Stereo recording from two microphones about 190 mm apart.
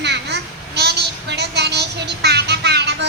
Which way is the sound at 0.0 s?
65° right (ahead or behind).